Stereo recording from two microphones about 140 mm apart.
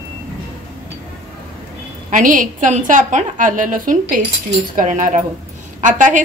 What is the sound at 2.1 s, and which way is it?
A woman's voice, 70° right (ahead or behind).